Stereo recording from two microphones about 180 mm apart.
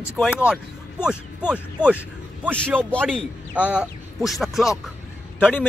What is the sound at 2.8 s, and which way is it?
Speech, 5° left (ahead or behind).